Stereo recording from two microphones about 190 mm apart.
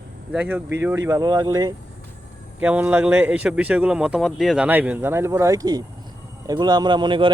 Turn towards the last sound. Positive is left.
turn(degrees=-25)  # may be behind; listen again after turning